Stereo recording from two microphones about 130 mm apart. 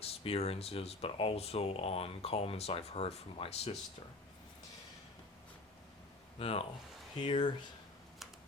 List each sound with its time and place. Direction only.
0.0 s speech: 50° left (ahead or behind)
6.4 s speech: 50° left (ahead or behind)
7.2 s speech: 35° left (ahead or behind)